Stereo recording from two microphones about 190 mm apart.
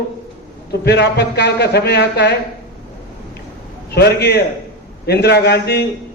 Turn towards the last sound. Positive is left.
turn(degrees=60)  # may be behind; listen again after turning